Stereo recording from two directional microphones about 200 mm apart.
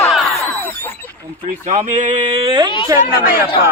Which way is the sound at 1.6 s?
40° right (ahead or behind).